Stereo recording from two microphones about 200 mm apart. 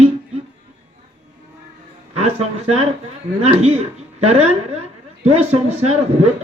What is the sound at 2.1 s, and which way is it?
Speech, 30° right (ahead or behind).